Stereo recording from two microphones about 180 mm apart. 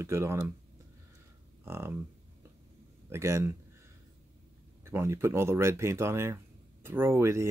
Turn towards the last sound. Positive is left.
turn(degrees=-15)  # may be behind; listen again after turning